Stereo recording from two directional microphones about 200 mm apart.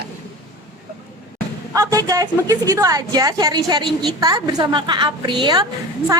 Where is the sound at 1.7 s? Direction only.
15° right (ahead or behind).